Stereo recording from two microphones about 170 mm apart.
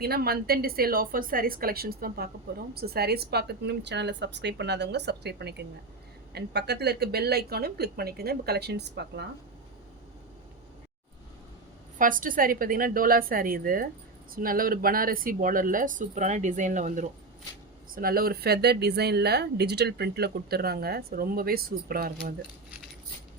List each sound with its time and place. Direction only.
0.0 s a woman's voice: 65° right (ahead or behind); by 9.2 s 80° right
11.9 s speech: 50° right (ahead or behind)
17.9 s speech: 60° right (ahead or behind)